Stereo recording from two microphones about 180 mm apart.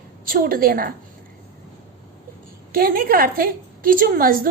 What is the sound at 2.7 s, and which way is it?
A woman's voice, 55° right (ahead or behind).